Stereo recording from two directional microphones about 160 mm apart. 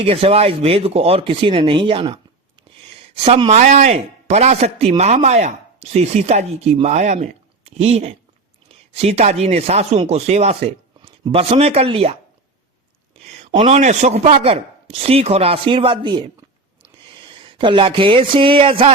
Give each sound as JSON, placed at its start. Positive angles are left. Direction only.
{"t": 0.0, "sound": "speech", "side_deg": -35}
{"t": 2.7, "sound": "a sound", "side_deg": -30}
{"t": 3.2, "sound": "speech", "side_deg": -30}
{"t": 3.5, "sound": "speech", "side_deg": -45}
{"t": 13.6, "sound": "speech", "side_deg": -45}